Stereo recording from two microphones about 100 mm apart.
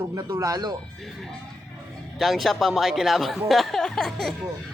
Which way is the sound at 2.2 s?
Centre (ahead or behind).